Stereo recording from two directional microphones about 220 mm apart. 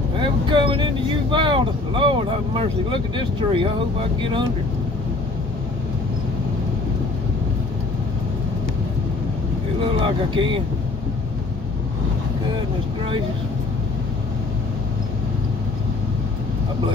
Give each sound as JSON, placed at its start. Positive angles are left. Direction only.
{"t": 0.2, "sound": "speech", "side_deg": -20}
{"t": 10.0, "sound": "speech", "side_deg": -25}